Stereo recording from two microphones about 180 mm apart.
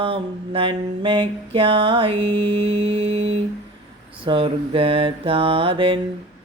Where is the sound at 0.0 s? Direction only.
30° right (ahead or behind).